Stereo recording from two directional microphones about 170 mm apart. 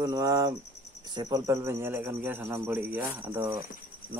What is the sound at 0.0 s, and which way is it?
Speech, 20° right (ahead or behind).